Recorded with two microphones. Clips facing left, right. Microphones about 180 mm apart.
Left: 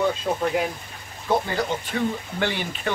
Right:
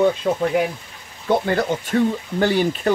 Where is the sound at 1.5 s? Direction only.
55° right (ahead or behind).